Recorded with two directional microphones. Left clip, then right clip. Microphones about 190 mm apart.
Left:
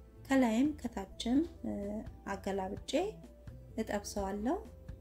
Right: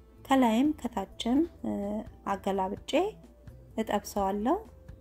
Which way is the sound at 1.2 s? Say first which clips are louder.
Right 4 dB; 40° right (ahead or behind).